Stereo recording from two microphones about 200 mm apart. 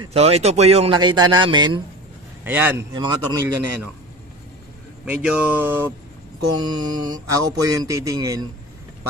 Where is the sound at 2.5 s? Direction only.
10° right (ahead or behind).